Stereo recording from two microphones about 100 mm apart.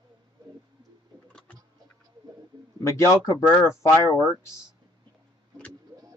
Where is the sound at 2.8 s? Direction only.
30° left (ahead or behind).